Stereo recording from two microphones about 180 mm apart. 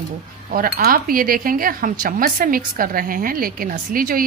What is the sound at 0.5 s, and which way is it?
Speech, 50° right (ahead or behind).